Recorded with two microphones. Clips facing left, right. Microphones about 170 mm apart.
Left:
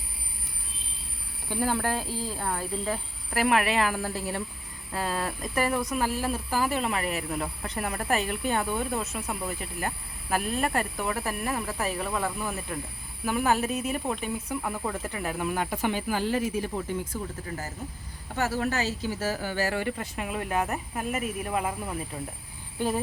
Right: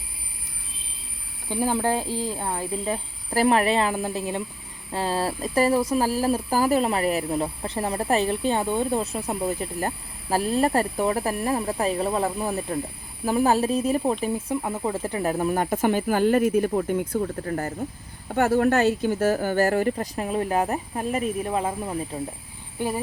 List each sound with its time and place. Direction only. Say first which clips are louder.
1.5 s speech: right 4 dB; 15° right (ahead or behind)
22.8 s speech: right 1 dB; 15° right (ahead or behind)